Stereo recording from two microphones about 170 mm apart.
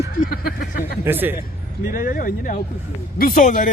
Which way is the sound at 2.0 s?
55° left (ahead or behind).